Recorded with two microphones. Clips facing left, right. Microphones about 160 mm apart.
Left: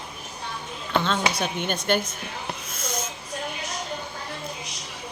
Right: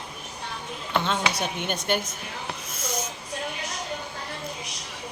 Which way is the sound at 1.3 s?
15° right (ahead or behind).